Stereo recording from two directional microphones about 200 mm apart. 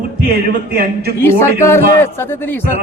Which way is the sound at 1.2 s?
10° left (ahead or behind).